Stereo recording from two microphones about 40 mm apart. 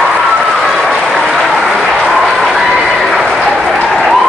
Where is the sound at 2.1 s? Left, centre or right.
Centre.